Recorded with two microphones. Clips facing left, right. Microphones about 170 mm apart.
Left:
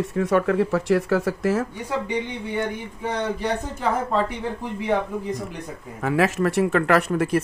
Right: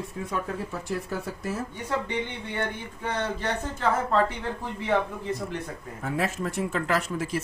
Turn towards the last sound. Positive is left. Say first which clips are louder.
# left 8 dB
turn(degrees=60)  # may be behind; listen again after turning